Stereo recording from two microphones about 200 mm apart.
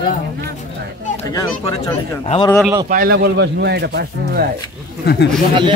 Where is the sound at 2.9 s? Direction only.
50° right (ahead or behind).